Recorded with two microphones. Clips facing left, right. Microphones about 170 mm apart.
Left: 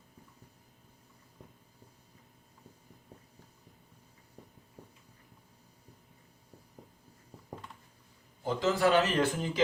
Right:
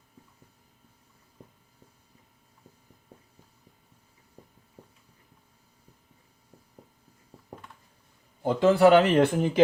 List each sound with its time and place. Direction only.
8.4 s a man's voice: 60° right (ahead or behind)